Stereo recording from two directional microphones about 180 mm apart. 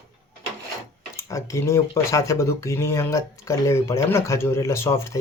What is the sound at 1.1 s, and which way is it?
Speech, 15° left (ahead or behind).